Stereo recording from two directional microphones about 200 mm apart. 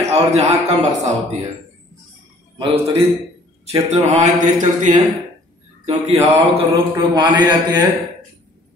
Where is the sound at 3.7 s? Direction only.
30° right (ahead or behind).